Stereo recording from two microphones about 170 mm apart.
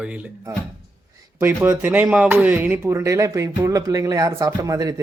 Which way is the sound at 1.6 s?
10° right (ahead or behind).